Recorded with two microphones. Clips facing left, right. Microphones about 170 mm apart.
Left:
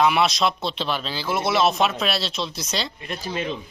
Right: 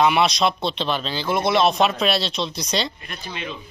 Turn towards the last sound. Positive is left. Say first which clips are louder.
# left 5 dB
turn(degrees=35)  # may be behind; listen again after turning